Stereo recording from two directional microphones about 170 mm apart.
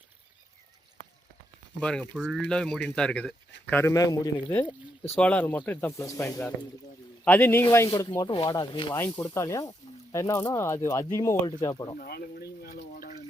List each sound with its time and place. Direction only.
1.8 s speech: 5° left (ahead or behind)
3.7 s speech: 15° left (ahead or behind)
5.1 s speech: 10° left (ahead or behind); by 11.9 s 25° left (ahead or behind)
11.9 s a sound: 60° left (ahead or behind)